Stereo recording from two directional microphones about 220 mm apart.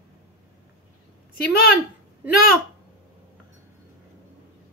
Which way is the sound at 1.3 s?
45° left (ahead or behind).